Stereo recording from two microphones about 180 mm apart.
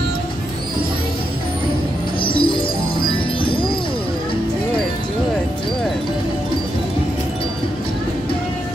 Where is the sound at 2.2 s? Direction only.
25° left (ahead or behind).